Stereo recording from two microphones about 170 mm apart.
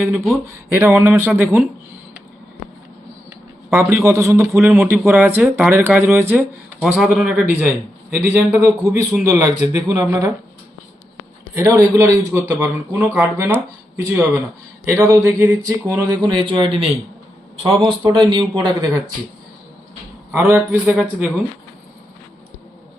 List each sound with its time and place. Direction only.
0.0 s a man's voice: 5° right (ahead or behind)
3.7 s a man's voice: 15° right (ahead or behind)
8.1 s a man's voice: 10° right (ahead or behind)
11.5 s a man's voice: 20° right (ahead or behind)
18.1 s speech: 30° right (ahead or behind)
20.3 s a man's voice: 15° right (ahead or behind)